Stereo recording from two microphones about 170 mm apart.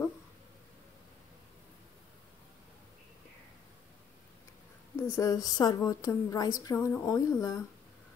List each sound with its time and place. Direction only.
5.0 s a woman's voice: 15° left (ahead or behind)